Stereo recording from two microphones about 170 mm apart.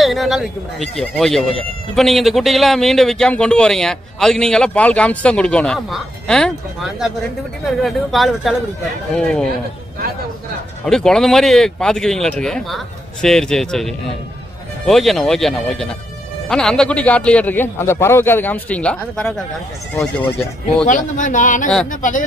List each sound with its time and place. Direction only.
0.0 s speech: centre (ahead or behind)
10.9 s a man's voice: 5° left (ahead or behind)
20.8 s speech: 50° left (ahead or behind)